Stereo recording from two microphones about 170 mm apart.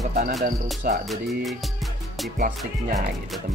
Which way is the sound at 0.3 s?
Centre (ahead or behind).